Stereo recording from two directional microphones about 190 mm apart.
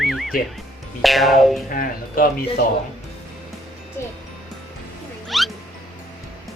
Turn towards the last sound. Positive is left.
turn(degrees=0)  # may be behind; listen again after turning